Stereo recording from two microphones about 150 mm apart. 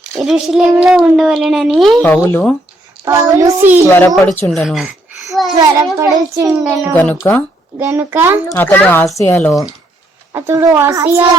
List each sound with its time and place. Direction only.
0.2 s speech: centre (ahead or behind)
2.0 s speech: 15° left (ahead or behind)
3.0 s a child's voice: 20° right (ahead or behind)
3.8 s a woman's voice: 15° left (ahead or behind); by 5.5 s centre (ahead or behind)
5.5 s a child's voice: 25° right (ahead or behind)
6.6 s speech: centre (ahead or behind)
6.9 s speech: 10° left (ahead or behind)
7.8 s a child's voice: 15° right (ahead or behind)
8.5 s speech: 15° left (ahead or behind)
10.3 s a child's voice: 20° right (ahead or behind)